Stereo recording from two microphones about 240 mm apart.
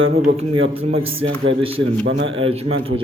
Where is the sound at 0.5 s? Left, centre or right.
Right.